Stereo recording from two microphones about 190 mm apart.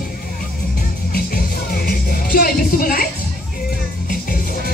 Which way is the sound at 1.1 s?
50° left (ahead or behind).